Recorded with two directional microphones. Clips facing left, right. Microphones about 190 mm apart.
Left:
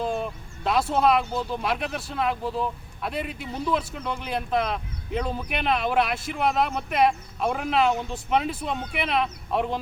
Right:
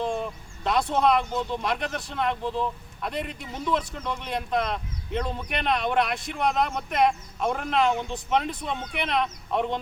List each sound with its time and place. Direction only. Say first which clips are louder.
0.0 s speech: left 1 dB; 5° left (ahead or behind)